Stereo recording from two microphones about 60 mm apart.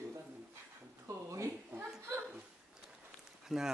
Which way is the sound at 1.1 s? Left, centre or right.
Right.